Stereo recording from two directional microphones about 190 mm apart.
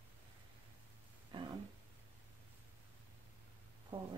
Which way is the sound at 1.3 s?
30° right (ahead or behind).